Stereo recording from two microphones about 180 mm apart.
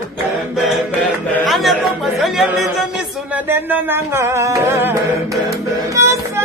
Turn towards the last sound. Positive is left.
turn(degrees=-15)  # may be behind; listen again after turning